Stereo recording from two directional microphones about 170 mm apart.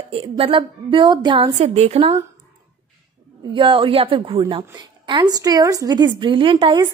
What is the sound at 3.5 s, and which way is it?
A woman's voice, 30° right (ahead or behind).